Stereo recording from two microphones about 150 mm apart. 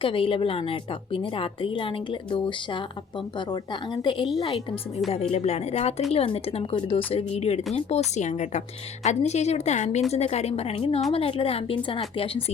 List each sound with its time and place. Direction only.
0.0 s a woman's voice: 35° left (ahead or behind)